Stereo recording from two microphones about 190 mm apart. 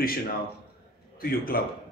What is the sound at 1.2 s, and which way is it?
Speech, 50° left (ahead or behind).